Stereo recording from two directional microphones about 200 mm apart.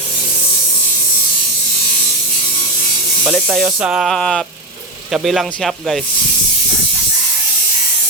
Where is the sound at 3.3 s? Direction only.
Centre (ahead or behind).